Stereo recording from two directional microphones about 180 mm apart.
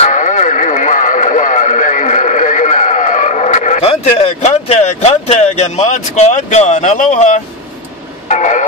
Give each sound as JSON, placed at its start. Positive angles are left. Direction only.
{"t": 0.0, "sound": "radio", "side_deg": 45}
{"t": 8.3, "sound": "vehicle", "side_deg": 45}